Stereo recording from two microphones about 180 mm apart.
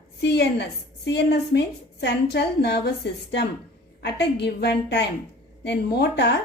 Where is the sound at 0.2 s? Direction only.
70° left (ahead or behind).